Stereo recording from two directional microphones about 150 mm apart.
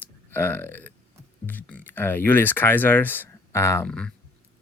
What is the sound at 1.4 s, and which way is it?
Music, 10° left (ahead or behind).